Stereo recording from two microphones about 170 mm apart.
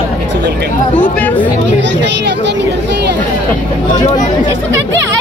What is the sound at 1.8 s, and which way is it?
Speech, 90° right.